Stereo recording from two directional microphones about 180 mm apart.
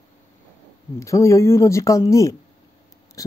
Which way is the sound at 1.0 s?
15° left (ahead or behind).